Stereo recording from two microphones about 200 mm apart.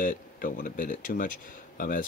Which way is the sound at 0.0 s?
40° left (ahead or behind).